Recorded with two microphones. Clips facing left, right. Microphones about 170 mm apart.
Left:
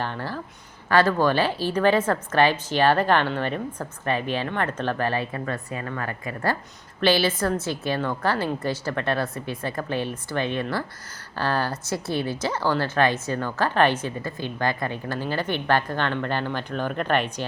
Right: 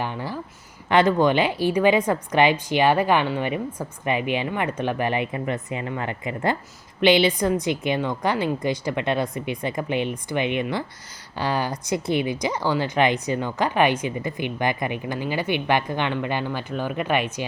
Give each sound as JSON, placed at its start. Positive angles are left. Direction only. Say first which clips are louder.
{"t": 0.0, "sound": "speech", "louder": "right 1 dB", "side_deg": -15}